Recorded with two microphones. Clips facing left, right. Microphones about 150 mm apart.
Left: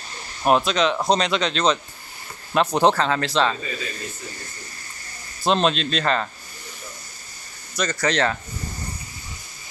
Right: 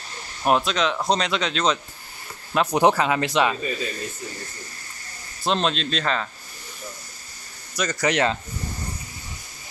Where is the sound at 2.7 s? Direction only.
10° right (ahead or behind).